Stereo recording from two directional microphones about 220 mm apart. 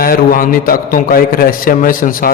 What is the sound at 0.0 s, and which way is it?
A man's voice, 40° left (ahead or behind).